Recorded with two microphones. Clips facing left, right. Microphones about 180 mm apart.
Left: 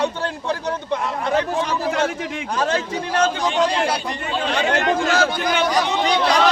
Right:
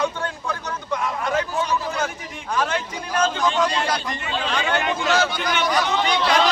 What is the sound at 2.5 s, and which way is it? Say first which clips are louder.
Speech: left 2 dB; 35° left (ahead or behind).